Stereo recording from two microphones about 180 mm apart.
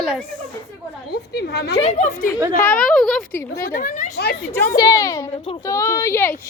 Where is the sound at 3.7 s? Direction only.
45° left (ahead or behind).